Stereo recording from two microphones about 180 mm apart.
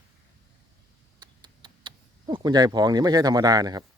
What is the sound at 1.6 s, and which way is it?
Speech, 25° right (ahead or behind).